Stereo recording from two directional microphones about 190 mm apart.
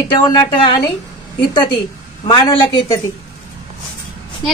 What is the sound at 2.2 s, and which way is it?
Speech, 25° left (ahead or behind).